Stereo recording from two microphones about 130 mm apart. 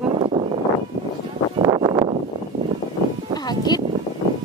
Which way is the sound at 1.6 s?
35° right (ahead or behind).